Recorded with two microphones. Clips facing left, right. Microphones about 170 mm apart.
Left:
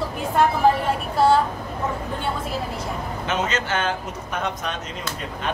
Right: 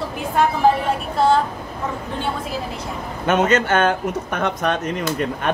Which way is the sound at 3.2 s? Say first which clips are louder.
Right 9 dB; 55° right (ahead or behind).